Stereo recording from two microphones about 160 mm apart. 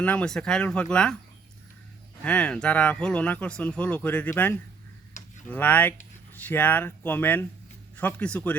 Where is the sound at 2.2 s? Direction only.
10° left (ahead or behind).